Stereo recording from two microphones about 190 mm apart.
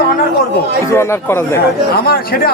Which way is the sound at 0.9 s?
15° left (ahead or behind).